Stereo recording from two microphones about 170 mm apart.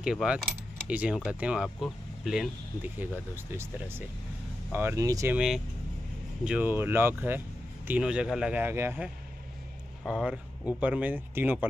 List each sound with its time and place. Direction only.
0.0 s speech: 5° right (ahead or behind)
4.7 s speech: 15° right (ahead or behind)
5.3 s speech: 5° right (ahead or behind)